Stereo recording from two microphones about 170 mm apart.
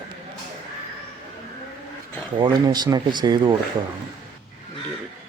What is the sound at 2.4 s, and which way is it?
Speech, 25° right (ahead or behind).